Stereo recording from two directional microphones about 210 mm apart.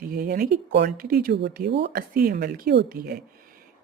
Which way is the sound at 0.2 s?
45° right (ahead or behind).